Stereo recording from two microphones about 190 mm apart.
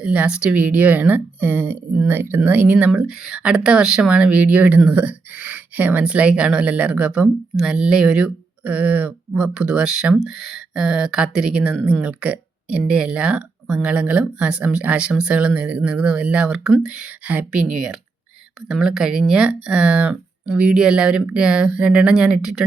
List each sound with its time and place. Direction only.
0.0 s speech: 5° right (ahead or behind)